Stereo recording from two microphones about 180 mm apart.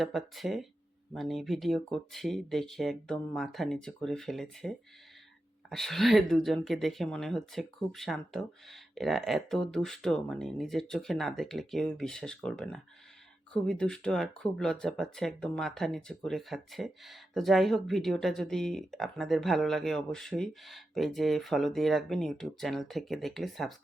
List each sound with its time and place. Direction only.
0.0 s speech: centre (ahead or behind)